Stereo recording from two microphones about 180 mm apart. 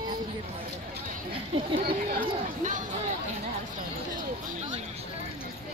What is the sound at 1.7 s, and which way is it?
Speech, 50° right (ahead or behind).